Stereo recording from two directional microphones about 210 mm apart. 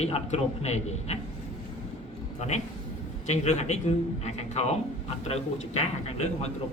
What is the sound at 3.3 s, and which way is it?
A man's voice, 35° left (ahead or behind).